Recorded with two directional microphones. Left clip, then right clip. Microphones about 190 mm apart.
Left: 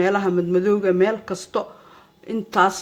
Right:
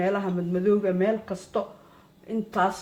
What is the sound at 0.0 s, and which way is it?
Speech, 50° left (ahead or behind).